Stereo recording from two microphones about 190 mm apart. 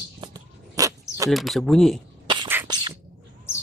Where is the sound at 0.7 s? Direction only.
15° right (ahead or behind).